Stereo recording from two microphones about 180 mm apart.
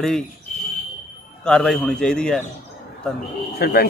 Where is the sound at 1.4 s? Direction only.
5° left (ahead or behind).